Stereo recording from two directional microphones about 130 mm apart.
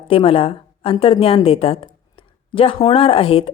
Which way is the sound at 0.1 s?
45° left (ahead or behind).